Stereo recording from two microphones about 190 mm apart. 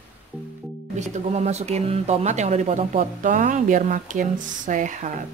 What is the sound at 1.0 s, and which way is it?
Speech, 35° right (ahead or behind).